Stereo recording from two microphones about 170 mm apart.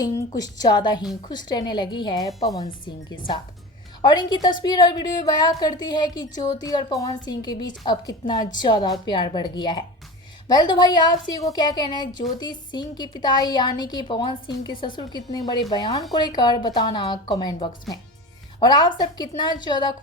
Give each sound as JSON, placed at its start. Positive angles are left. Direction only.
{"t": 0.0, "sound": "a woman's voice", "side_deg": 20}
{"t": 8.5, "sound": "a woman's voice", "side_deg": 25}